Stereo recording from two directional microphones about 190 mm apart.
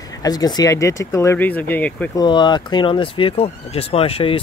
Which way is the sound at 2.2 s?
25° left (ahead or behind).